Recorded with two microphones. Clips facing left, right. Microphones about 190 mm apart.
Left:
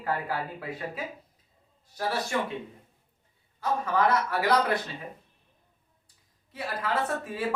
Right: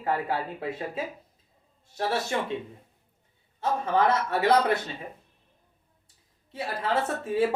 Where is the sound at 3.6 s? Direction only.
25° right (ahead or behind).